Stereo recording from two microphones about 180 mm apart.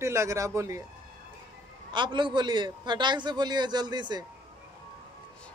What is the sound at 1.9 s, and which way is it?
A man's voice, 25° right (ahead or behind).